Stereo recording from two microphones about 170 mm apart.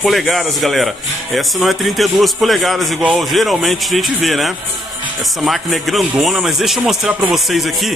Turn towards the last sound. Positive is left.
turn(degrees=0)  # may be behind; listen again after turning